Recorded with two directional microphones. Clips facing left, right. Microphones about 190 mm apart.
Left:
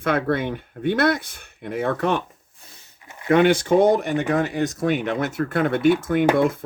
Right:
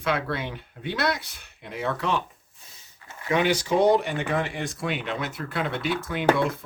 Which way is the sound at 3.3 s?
55° left (ahead or behind).